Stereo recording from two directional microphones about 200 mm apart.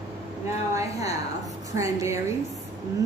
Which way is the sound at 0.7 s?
15° right (ahead or behind).